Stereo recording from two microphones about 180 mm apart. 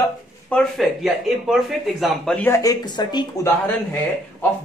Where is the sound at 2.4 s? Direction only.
15° left (ahead or behind).